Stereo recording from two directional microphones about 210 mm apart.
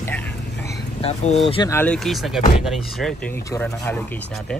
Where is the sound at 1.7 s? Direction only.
10° left (ahead or behind).